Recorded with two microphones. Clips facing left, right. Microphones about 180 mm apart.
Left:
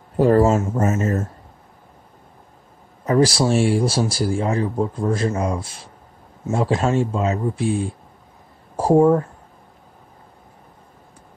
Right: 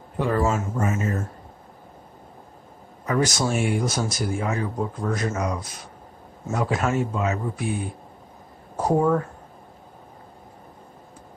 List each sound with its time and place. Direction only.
0.2 s speech: 40° left (ahead or behind)
3.1 s speech: 30° left (ahead or behind)